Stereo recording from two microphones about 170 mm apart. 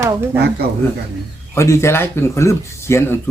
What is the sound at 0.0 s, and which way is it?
Speech, 15° right (ahead or behind).